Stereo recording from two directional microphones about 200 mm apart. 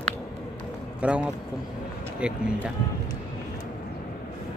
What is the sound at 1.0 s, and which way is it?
Speech, 5° right (ahead or behind).